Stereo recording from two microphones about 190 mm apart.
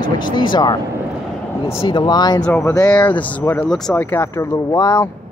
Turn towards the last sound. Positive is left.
turn(degrees=20)  # may be behind; listen again after turning